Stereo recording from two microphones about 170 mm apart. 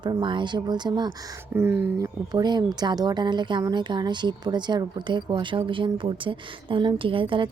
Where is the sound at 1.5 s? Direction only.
15° right (ahead or behind).